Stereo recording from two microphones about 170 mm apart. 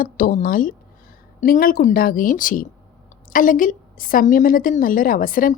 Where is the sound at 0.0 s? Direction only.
60° left (ahead or behind).